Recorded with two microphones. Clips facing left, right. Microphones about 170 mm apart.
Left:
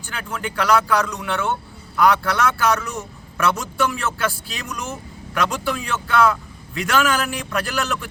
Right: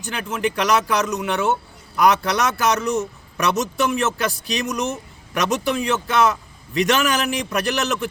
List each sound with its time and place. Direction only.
0.1 s a man's voice: 20° right (ahead or behind)